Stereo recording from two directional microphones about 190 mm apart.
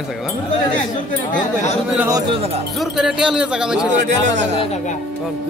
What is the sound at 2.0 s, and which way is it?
Speech, 20° right (ahead or behind).